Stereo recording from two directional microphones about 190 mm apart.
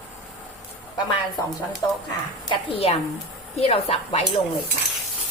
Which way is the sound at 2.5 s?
30° left (ahead or behind).